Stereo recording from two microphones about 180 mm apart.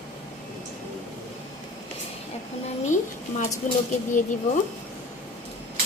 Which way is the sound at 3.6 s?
45° left (ahead or behind).